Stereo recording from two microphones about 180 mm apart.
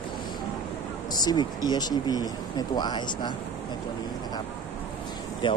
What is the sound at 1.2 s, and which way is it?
Speech, 20° left (ahead or behind).